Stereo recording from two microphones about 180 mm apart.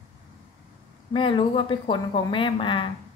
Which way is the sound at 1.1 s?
30° left (ahead or behind).